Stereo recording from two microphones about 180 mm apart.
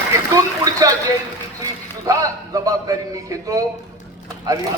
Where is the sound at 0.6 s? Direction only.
20° right (ahead or behind).